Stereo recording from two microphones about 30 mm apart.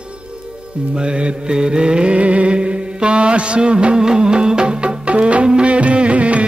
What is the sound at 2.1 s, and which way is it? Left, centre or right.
Music, right.